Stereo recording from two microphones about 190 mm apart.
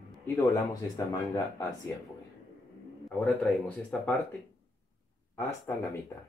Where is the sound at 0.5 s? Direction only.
20° left (ahead or behind).